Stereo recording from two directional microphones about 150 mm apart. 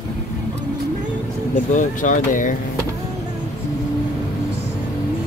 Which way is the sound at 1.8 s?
55° left (ahead or behind).